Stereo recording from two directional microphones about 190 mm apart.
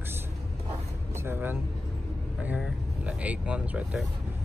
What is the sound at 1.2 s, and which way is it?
Speech, 10° right (ahead or behind).